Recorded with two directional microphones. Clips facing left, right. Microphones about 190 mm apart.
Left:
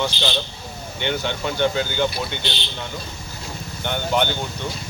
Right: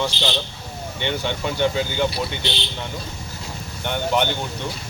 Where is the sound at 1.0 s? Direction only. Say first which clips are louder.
Even; centre (ahead or behind).